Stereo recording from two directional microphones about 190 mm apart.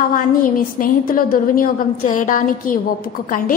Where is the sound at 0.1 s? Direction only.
50° left (ahead or behind).